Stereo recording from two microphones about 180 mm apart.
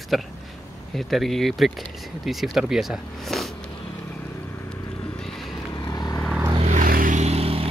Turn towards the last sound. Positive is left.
turn(degrees=-35)  # may be behind; listen again after turning